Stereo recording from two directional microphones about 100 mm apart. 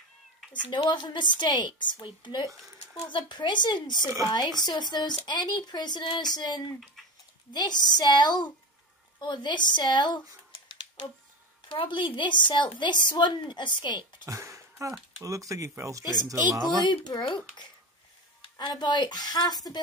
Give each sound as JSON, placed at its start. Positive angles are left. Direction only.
{"t": 0.7, "sound": "a woman's voice", "side_deg": 50}
{"t": 11.7, "sound": "a woman's voice", "side_deg": 60}
{"t": 14.2, "sound": "a sound", "side_deg": -30}
{"t": 15.2, "sound": "speech", "side_deg": -30}
{"t": 16.0, "sound": "a woman's voice", "side_deg": 40}
{"t": 18.7, "sound": "a woman's voice", "side_deg": 50}